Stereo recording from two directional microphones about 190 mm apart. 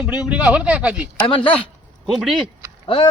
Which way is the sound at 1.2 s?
30° left (ahead or behind).